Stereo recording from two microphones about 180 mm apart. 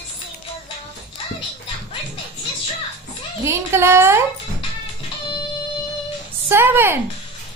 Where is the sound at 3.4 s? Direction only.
15° right (ahead or behind).